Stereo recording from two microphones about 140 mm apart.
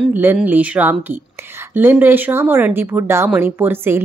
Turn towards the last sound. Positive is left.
turn(degrees=-15)  # may be behind; listen again after turning